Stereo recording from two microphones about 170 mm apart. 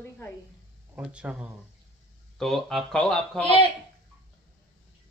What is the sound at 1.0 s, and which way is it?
Speech, 5° right (ahead or behind).